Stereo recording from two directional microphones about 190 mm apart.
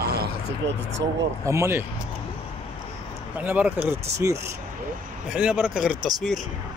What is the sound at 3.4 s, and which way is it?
Speech, 10° right (ahead or behind).